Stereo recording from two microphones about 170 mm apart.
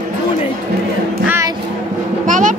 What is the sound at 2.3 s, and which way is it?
Music, 45° right (ahead or behind).